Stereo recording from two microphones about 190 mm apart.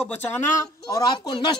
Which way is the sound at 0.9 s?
20° left (ahead or behind).